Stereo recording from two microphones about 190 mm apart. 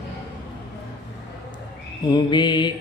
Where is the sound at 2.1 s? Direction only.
25° left (ahead or behind).